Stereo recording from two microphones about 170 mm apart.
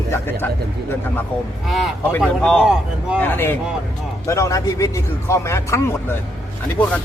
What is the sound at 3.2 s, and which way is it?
A man's voice, 10° left (ahead or behind).